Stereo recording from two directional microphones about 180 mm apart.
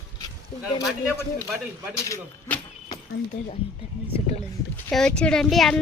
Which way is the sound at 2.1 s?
10° left (ahead or behind).